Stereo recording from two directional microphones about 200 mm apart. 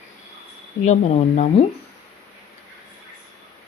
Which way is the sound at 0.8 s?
35° left (ahead or behind).